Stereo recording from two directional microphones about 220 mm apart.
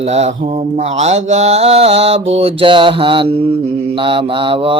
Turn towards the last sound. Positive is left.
turn(degrees=-25)  # may be behind; listen again after turning